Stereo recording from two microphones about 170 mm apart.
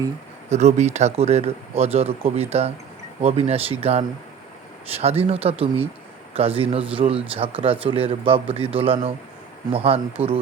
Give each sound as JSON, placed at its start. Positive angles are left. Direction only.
{"t": 0.5, "sound": "a man's voice", "side_deg": -40}
{"t": 10.2, "sound": "speech", "side_deg": -10}